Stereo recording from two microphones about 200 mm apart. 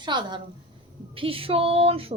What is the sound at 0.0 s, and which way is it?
A woman's voice, 20° right (ahead or behind).